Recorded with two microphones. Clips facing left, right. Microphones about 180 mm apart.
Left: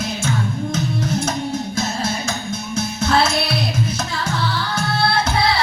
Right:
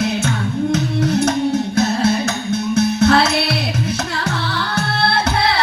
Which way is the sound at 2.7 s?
60° right (ahead or behind).